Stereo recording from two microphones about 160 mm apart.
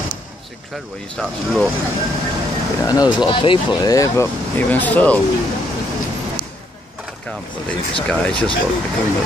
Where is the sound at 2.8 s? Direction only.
25° left (ahead or behind).